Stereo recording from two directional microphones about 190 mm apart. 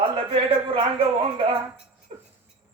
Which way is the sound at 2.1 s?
35° right (ahead or behind).